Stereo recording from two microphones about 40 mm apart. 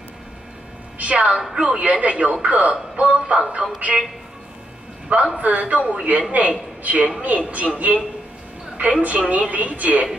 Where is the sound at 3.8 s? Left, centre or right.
Right.